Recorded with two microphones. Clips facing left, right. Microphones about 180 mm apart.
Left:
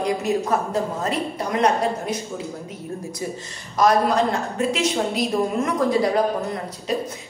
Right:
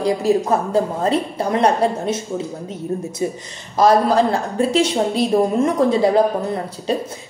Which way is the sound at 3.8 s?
30° right (ahead or behind).